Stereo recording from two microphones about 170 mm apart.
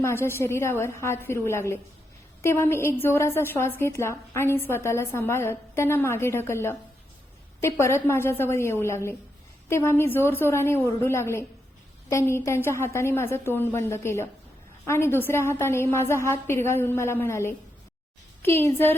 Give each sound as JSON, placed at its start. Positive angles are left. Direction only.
{"t": 0.0, "sound": "a woman's voice", "side_deg": 15}
{"t": 18.6, "sound": "a woman's voice", "side_deg": 15}